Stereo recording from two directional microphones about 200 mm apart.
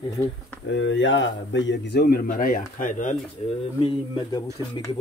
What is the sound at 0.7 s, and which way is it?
A man's voice, 65° left (ahead or behind).